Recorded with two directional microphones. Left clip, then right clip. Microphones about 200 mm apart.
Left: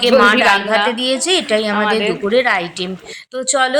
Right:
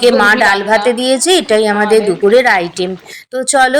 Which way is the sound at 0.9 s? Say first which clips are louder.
Right 5 dB; 20° right (ahead or behind).